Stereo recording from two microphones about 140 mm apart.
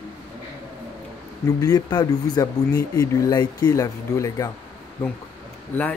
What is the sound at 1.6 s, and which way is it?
Speech, 30° left (ahead or behind).